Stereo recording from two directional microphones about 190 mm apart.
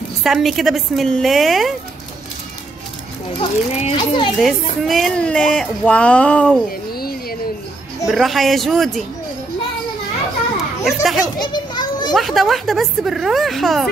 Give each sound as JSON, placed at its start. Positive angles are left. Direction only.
{"t": 0.2, "sound": "speech", "side_deg": 0}
{"t": 3.3, "sound": "a child's voice", "side_deg": 25}
{"t": 4.4, "sound": "speech", "side_deg": 0}
{"t": 6.9, "sound": "music", "side_deg": 50}
{"t": 8.1, "sound": "speech", "side_deg": 0}
{"t": 10.8, "sound": "speech", "side_deg": 0}
{"t": 11.4, "sound": "children playing", "side_deg": 25}
{"t": 12.1, "sound": "speech", "side_deg": 0}